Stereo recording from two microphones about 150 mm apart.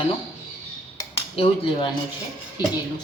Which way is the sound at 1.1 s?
40° left (ahead or behind).